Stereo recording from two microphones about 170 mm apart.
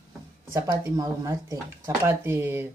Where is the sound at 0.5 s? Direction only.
20° right (ahead or behind).